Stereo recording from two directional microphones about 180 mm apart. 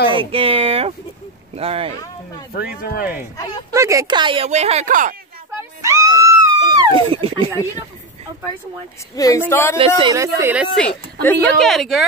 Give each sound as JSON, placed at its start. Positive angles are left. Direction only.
{"t": 0.1, "sound": "speech", "side_deg": -30}
{"t": 2.5, "sound": "speech", "side_deg": 55}
{"t": 3.7, "sound": "speech", "side_deg": -15}
{"t": 4.5, "sound": "speech", "side_deg": -40}
{"t": 5.6, "sound": "a sound", "side_deg": -15}
{"t": 9.1, "sound": "speech", "side_deg": 20}
{"t": 9.8, "sound": "speech", "side_deg": -20}
{"t": 11.2, "sound": "speech", "side_deg": 5}